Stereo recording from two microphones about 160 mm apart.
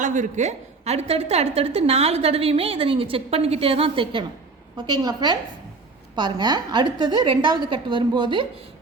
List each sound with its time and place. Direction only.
0.0 s a woman's voice: 50° right (ahead or behind); by 8.4 s 30° right (ahead or behind)